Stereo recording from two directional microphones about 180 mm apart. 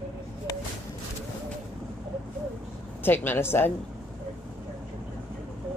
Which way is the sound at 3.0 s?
10° left (ahead or behind).